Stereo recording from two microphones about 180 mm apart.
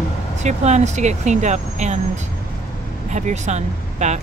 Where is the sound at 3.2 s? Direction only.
40° right (ahead or behind).